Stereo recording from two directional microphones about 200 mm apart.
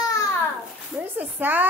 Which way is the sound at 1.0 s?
10° right (ahead or behind).